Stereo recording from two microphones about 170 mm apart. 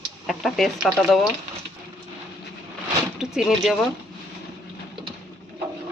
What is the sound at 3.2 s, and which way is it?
Speech, centre (ahead or behind).